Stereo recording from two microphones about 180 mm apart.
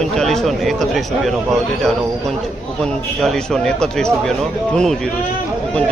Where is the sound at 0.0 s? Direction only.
Centre (ahead or behind).